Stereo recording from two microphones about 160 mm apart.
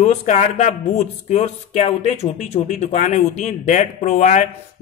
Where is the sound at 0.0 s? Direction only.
45° left (ahead or behind).